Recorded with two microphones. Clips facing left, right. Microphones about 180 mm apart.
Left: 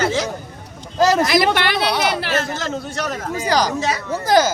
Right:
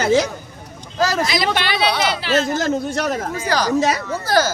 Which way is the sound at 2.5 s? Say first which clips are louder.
Right 5 dB; 40° right (ahead or behind).